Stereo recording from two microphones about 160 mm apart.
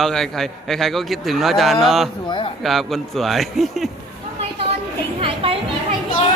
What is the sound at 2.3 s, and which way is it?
Speech, 35° left (ahead or behind).